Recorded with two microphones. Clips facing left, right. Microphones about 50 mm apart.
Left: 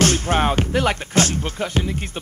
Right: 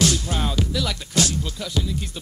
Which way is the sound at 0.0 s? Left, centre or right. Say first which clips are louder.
Left 5 dB; left.